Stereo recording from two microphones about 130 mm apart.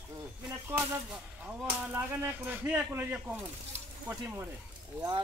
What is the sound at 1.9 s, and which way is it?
Speech, 15° right (ahead or behind).